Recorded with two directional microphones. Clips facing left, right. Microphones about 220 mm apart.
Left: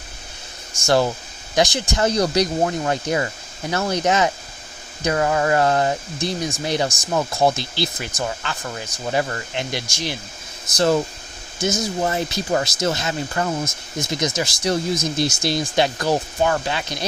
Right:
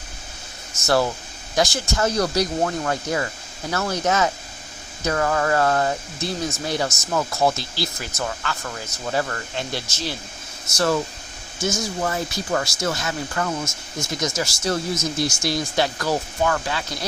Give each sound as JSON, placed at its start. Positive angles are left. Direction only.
{"t": 1.5, "sound": "speech", "side_deg": 15}